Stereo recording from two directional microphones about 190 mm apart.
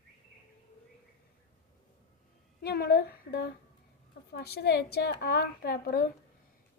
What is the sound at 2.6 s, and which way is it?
Speech, 55° left (ahead or behind).